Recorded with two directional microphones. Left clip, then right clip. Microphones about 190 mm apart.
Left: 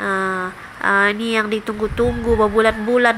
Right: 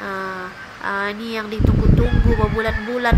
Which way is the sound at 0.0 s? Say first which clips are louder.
Left 6 dB; 25° left (ahead or behind).